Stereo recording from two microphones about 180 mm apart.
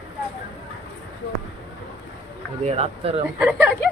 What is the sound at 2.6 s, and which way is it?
Speech, 35° right (ahead or behind).